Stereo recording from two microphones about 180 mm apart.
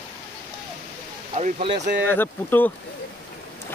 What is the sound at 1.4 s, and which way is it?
Speech, 40° right (ahead or behind).